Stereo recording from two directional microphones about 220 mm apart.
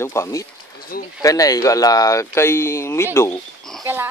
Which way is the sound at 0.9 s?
40° left (ahead or behind).